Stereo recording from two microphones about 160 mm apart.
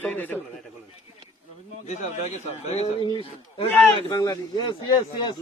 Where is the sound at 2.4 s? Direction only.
40° left (ahead or behind).